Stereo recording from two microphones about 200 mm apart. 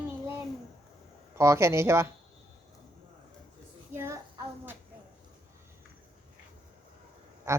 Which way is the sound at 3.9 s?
15° right (ahead or behind).